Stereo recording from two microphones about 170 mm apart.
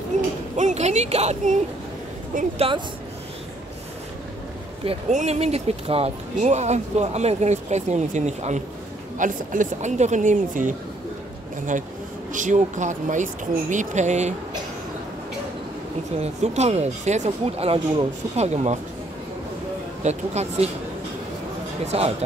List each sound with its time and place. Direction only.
0.6 s speech: 45° right (ahead or behind)
2.3 s speech: 55° right (ahead or behind)
5.1 s speech: 40° right (ahead or behind)
12.3 s speech: 45° right (ahead or behind)
16.2 s speech: 40° right (ahead or behind)
20.0 s speech: 40° right (ahead or behind)
21.8 s speech: 35° right (ahead or behind)